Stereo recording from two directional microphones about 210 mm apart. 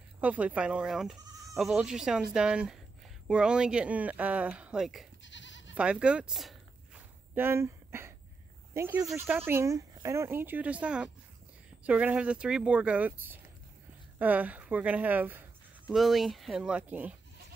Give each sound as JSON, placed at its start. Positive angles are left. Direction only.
{"t": 0.2, "sound": "speech", "side_deg": -5}
{"t": 5.2, "sound": "goat", "side_deg": 60}
{"t": 5.8, "sound": "speech", "side_deg": -5}